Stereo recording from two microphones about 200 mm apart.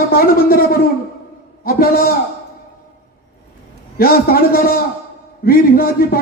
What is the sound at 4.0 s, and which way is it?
A man's voice, 45° left (ahead or behind).